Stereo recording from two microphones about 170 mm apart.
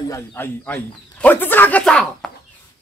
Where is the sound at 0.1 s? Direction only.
10° left (ahead or behind).